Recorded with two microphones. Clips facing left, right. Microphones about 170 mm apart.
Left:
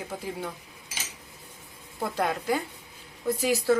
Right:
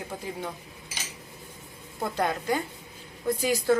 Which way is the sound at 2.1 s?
5° left (ahead or behind).